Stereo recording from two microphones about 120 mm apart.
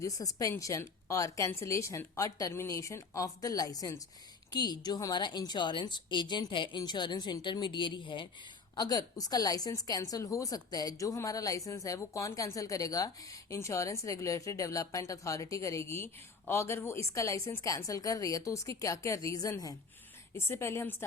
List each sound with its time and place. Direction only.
0.0 s a woman's voice: 30° left (ahead or behind)